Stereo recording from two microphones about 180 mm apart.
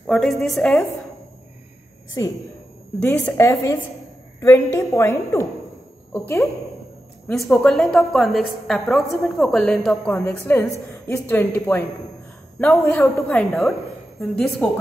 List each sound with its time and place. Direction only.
0.0 s a woman's voice: centre (ahead or behind)
2.2 s a woman's voice: 20° left (ahead or behind); by 10.1 s centre (ahead or behind)
10.1 s a woman's voice: 15° left (ahead or behind)